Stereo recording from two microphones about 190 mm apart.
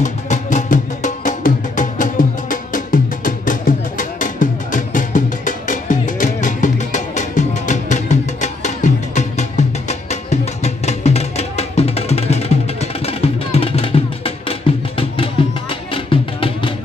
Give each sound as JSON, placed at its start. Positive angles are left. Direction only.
{"t": 0.0, "sound": "music", "side_deg": 40}